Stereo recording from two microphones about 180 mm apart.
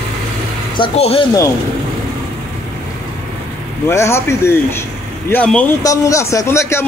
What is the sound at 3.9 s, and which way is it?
Speech, 15° left (ahead or behind).